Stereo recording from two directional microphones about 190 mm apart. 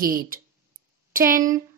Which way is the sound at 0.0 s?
50° right (ahead or behind).